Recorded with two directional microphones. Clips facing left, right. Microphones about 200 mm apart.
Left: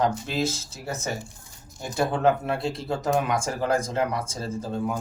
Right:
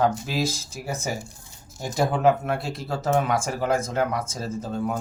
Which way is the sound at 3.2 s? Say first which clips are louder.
Right 1 dB; 5° right (ahead or behind).